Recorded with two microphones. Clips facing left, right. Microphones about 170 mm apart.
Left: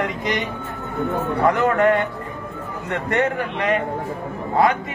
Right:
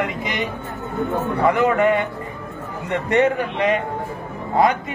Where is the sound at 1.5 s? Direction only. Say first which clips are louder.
Even; 10° right (ahead or behind).